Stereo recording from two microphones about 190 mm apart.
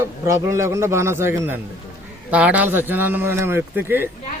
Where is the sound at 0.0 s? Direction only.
15° right (ahead or behind).